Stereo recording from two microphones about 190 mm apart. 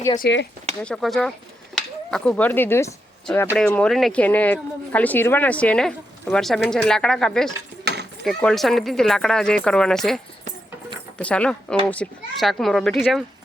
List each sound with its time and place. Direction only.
0.2 s speech: 65° left (ahead or behind)
0.8 s speech: 5° left (ahead or behind)
7.9 s a sound: 60° right (ahead or behind)
8.2 s speech: 5° left (ahead or behind)
11.2 s speech: 5° left (ahead or behind)